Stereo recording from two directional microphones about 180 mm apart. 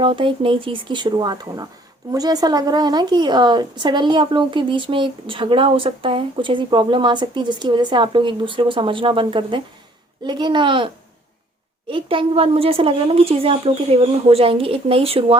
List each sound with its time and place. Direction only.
0.0 s a woman's voice: 30° right (ahead or behind)